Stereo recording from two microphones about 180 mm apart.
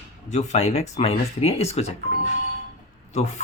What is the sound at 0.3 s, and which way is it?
Speech, 35° left (ahead or behind).